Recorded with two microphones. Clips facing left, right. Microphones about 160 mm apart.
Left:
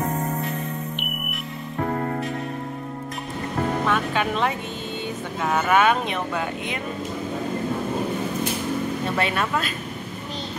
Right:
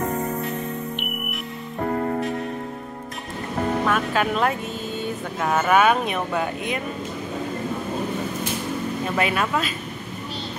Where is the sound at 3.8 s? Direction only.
5° right (ahead or behind).